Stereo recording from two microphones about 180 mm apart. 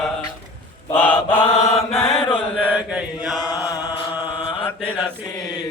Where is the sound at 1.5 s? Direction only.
35° left (ahead or behind).